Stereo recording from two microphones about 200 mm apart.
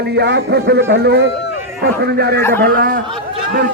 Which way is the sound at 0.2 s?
55° right (ahead or behind).